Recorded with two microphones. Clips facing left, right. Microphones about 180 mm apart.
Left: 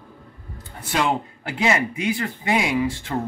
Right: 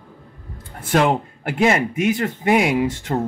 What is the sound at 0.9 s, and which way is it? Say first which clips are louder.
Speech: right 5 dB; 55° right (ahead or behind).